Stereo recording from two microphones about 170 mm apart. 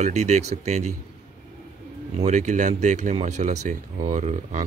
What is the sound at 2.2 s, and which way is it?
Speech, 45° right (ahead or behind).